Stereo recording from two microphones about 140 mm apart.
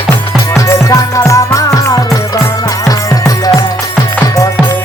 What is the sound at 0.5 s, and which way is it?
Music, 20° left (ahead or behind).